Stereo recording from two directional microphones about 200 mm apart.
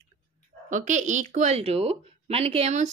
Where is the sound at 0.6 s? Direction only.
40° right (ahead or behind).